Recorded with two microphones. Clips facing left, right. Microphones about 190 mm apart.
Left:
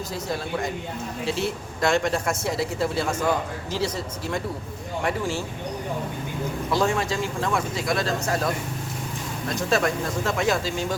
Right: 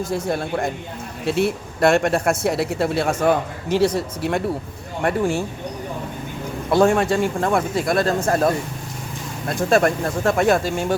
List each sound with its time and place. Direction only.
0.1 s speech: 55° right (ahead or behind)
6.7 s speech: 55° right (ahead or behind)
9.6 s speech: 55° right (ahead or behind)